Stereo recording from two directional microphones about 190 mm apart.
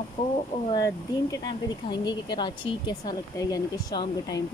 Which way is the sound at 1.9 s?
25° left (ahead or behind).